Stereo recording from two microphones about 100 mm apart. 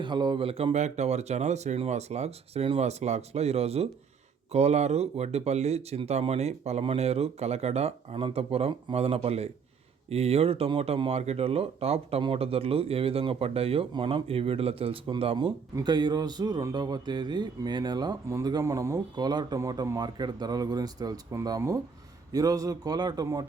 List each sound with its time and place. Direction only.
0.0 s speech: 50° right (ahead or behind); by 12.2 s 90° right
12.2 s speech: 70° right (ahead or behind)
13.9 s speech: 60° right (ahead or behind)
15.8 s speech: 45° right (ahead or behind)
18.6 s speech: 30° right (ahead or behind)
22.3 s speech: 40° right (ahead or behind)